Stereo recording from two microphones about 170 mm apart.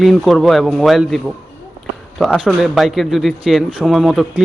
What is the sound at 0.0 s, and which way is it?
A man's voice, centre (ahead or behind).